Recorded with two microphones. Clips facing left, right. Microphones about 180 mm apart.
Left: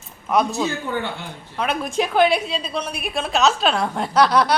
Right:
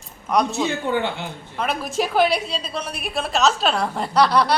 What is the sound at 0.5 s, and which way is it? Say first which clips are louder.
Speech: right 2 dB; 25° right (ahead or behind).